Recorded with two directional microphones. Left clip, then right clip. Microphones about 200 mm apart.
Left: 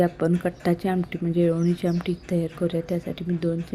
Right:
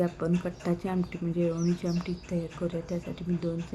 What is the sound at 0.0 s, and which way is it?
Speech, 25° left (ahead or behind).